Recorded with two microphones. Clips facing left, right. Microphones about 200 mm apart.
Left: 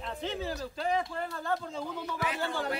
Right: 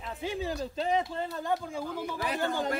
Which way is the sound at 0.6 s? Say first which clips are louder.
Right 2 dB; 25° right (ahead or behind).